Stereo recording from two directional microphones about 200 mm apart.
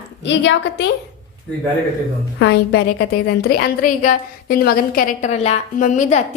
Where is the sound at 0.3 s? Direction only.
65° left (ahead or behind).